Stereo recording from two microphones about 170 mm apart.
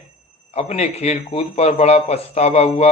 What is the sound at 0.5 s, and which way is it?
A man's voice, 40° left (ahead or behind).